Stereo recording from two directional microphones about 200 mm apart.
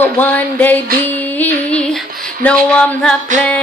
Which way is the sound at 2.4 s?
5° left (ahead or behind).